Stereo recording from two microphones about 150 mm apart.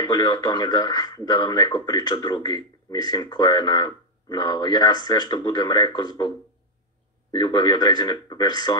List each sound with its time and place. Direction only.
0.0 s speech: 25° left (ahead or behind)